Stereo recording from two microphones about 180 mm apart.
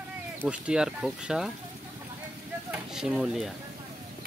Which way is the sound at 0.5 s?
5° right (ahead or behind).